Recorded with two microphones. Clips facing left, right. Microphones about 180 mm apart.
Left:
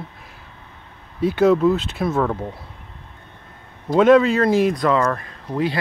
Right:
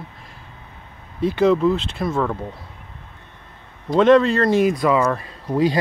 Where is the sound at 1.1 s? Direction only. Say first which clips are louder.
Left 1 dB; 5° left (ahead or behind).